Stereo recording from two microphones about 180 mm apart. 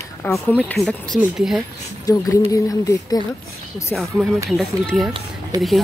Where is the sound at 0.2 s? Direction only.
10° left (ahead or behind).